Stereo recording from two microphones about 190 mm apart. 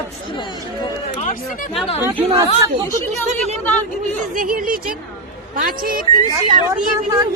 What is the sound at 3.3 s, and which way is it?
Speech, 35° right (ahead or behind).